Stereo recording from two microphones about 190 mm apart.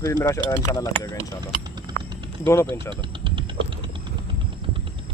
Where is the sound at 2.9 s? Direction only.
25° right (ahead or behind).